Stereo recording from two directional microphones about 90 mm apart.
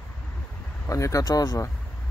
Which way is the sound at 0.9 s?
35° left (ahead or behind).